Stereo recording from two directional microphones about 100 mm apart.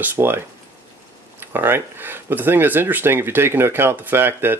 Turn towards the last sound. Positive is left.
turn(degrees=-20)  # may be behind; listen again after turning